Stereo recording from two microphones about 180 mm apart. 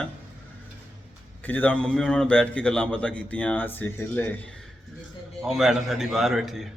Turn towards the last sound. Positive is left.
turn(degrees=0)  # may be behind; listen again after turning